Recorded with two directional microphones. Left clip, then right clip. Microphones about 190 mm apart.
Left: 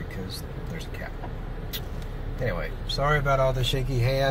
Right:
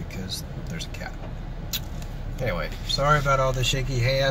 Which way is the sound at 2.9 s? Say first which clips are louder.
Right 3 dB; 10° right (ahead or behind).